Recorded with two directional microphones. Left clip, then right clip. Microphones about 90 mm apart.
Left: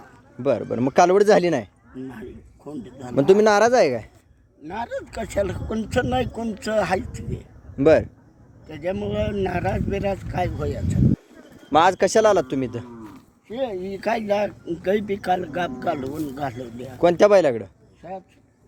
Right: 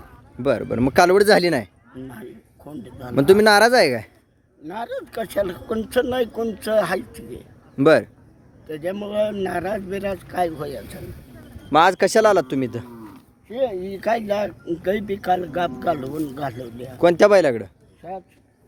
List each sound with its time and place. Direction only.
0.3 s speech: 50° right (ahead or behind)
2.6 s speech: 25° right (ahead or behind)
3.2 s speech: 65° right (ahead or behind)
4.7 s speech: 15° right (ahead or behind)
7.8 s speech: 55° right (ahead or behind)
8.6 s speech: 20° right (ahead or behind)
11.7 s speech: 50° right (ahead or behind)
13.5 s speech: 5° right (ahead or behind)
16.0 s speech: 40° left (ahead or behind)
16.3 s speech: 20° right (ahead or behind)
16.6 s speech: 30° right (ahead or behind)
17.0 s speech: 70° right (ahead or behind)